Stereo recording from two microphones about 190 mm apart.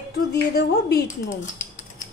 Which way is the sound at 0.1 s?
55° left (ahead or behind).